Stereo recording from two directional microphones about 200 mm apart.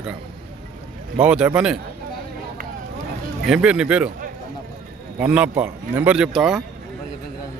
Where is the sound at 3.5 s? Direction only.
5° right (ahead or behind).